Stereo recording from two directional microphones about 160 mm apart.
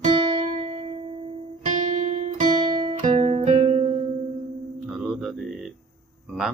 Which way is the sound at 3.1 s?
30° right (ahead or behind).